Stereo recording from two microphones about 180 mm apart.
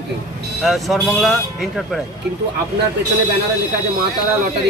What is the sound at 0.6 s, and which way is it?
Speech, centre (ahead or behind).